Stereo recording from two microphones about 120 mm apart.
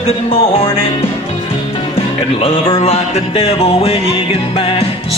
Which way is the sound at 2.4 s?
60° left (ahead or behind).